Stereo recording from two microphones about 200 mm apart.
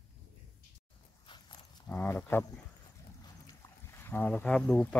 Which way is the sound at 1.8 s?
10° left (ahead or behind).